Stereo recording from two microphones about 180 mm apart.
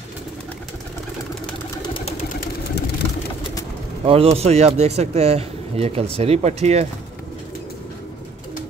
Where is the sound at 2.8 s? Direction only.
65° left (ahead or behind).